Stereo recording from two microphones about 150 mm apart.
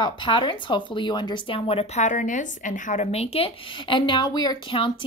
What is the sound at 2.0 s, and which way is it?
Speech, 55° left (ahead or behind).